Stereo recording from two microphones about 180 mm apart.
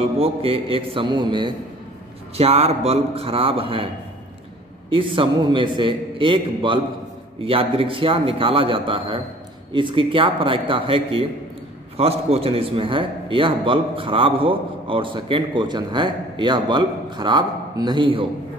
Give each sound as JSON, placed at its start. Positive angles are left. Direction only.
{"t": 0.0, "sound": "a man's voice", "side_deg": -30}